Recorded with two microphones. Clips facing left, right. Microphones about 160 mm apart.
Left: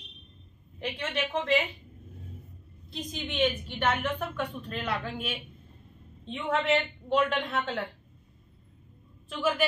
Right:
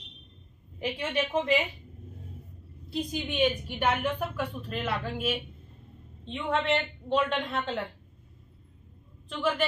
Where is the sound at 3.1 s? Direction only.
10° right (ahead or behind).